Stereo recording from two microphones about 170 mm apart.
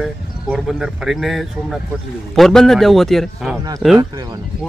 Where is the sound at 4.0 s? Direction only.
20° right (ahead or behind).